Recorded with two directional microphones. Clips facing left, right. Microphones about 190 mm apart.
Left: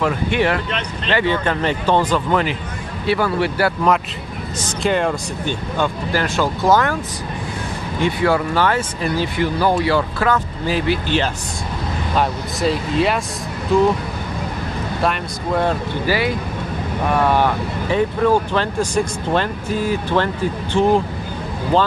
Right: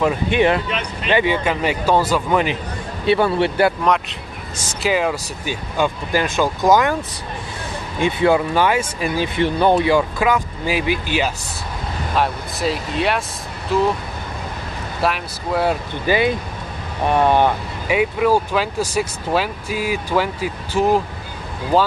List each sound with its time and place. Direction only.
0.0 s speech: 20° right (ahead or behind)
0.7 s speech: 10° right (ahead or behind)
3.1 s speech: 25° right (ahead or behind)
4.6 s speech: 5° right (ahead or behind)
8.0 s speech: 15° right (ahead or behind)
12.2 s speech: centre (ahead or behind)
15.0 s speech: 5° right (ahead or behind)
16.1 s speech: 20° right (ahead or behind)